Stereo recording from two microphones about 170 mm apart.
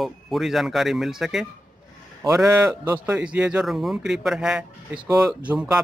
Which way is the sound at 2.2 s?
20° right (ahead or behind).